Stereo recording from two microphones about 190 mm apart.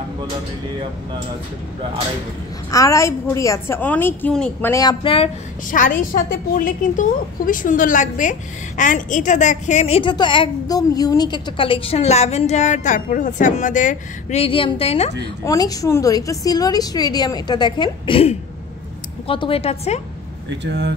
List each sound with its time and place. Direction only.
2.7 s a woman's voice: 15° left (ahead or behind)
5.7 s a woman's voice: 45° left (ahead or behind)
15.4 s a woman's voice: 20° left (ahead or behind)
20.4 s speech: 65° right (ahead or behind)